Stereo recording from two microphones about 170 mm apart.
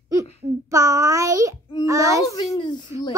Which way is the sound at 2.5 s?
25° left (ahead or behind).